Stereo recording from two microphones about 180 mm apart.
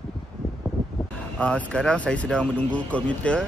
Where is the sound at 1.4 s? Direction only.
5° left (ahead or behind).